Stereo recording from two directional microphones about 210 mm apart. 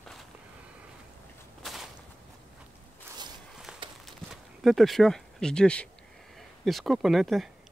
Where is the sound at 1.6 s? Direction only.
Centre (ahead or behind).